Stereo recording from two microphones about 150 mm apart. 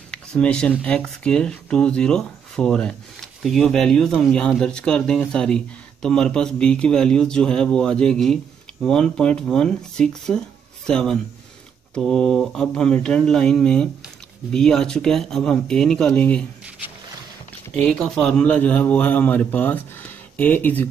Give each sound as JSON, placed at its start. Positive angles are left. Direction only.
{"t": 0.1, "sound": "speech", "side_deg": 5}
{"t": 17.8, "sound": "a man's voice", "side_deg": 5}